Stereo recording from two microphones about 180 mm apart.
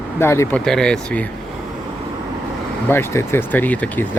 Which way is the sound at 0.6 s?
5° left (ahead or behind).